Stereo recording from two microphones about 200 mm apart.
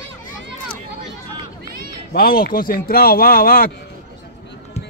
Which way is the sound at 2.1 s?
50° left (ahead or behind).